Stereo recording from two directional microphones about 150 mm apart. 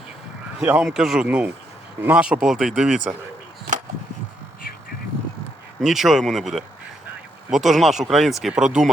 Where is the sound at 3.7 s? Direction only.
55° right (ahead or behind).